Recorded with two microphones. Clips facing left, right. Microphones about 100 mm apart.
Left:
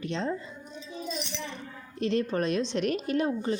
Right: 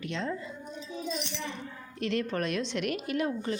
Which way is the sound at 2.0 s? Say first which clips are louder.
Left 3 dB; 25° left (ahead or behind).